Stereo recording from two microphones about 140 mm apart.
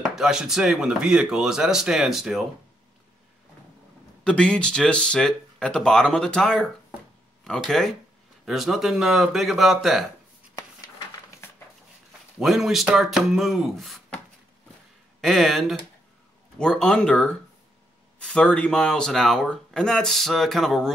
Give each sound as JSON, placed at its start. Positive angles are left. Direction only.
{"t": 0.1, "sound": "speech", "side_deg": -5}
{"t": 4.2, "sound": "speech", "side_deg": 5}
{"t": 11.4, "sound": "a sound", "side_deg": 15}
{"t": 12.4, "sound": "speech", "side_deg": 0}